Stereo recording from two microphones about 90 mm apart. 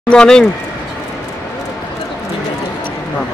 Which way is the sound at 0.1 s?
10° left (ahead or behind).